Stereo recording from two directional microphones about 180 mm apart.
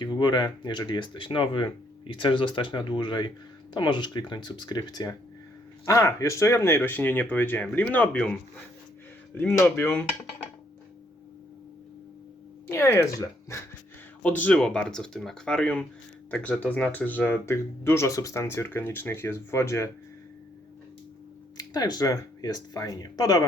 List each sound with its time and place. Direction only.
0.0 s speech: 25° left (ahead or behind)
12.6 s speech: 15° left (ahead or behind)
21.6 s speech: 20° left (ahead or behind)